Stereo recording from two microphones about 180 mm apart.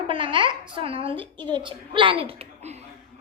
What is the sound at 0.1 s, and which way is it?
A woman's voice, 30° right (ahead or behind).